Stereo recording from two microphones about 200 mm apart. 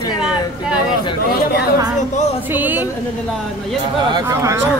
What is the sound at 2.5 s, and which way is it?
Speech, 10° right (ahead or behind).